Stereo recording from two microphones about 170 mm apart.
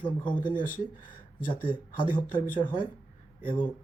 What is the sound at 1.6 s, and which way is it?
Speech, 30° left (ahead or behind).